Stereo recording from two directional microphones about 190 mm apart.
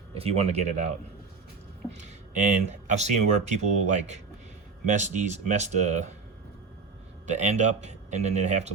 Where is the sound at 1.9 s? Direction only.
40° right (ahead or behind).